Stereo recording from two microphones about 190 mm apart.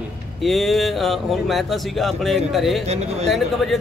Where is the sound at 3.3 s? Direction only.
Centre (ahead or behind).